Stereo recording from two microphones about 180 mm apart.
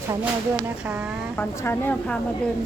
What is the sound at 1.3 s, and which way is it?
Speech, 10° left (ahead or behind).